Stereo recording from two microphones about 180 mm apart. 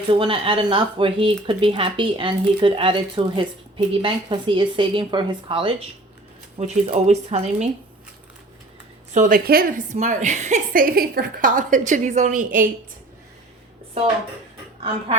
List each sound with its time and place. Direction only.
0.1 s speech: 30° right (ahead or behind)
9.1 s a woman's voice: 50° right (ahead or behind)